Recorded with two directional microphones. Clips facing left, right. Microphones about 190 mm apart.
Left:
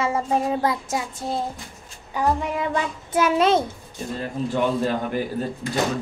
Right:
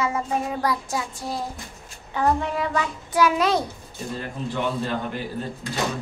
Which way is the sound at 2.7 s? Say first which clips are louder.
Left 1 dB; 25° left (ahead or behind).